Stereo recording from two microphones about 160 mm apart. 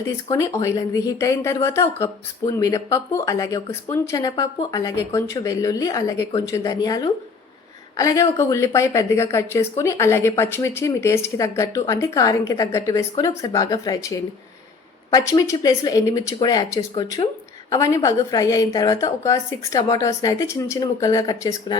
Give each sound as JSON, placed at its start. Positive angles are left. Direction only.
{"t": 0.3, "sound": "a woman's voice", "side_deg": 20}